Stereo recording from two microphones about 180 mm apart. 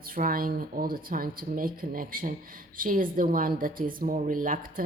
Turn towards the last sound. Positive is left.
turn(degrees=-50)  # may be behind; listen again after turning